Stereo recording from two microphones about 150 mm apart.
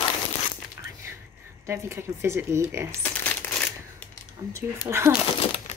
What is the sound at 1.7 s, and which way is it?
A woman's voice, 20° right (ahead or behind).